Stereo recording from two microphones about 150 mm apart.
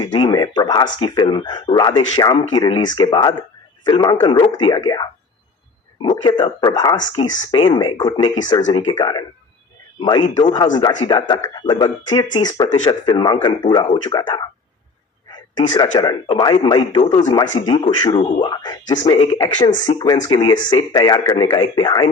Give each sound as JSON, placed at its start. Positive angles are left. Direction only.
{"t": 0.0, "sound": "speech", "side_deg": 30}